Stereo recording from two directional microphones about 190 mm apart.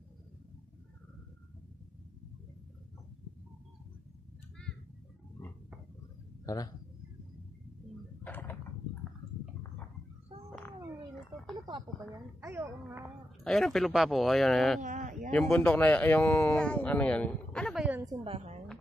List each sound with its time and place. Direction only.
6.4 s a man's voice: 20° left (ahead or behind)
8.2 s door: 10° left (ahead or behind)
12.4 s speech: 15° right (ahead or behind)
13.4 s speech: centre (ahead or behind)
14.8 s a sound: 45° right (ahead or behind)
15.5 s speech: 10° left (ahead or behind)
18.2 s a sound: 35° right (ahead or behind)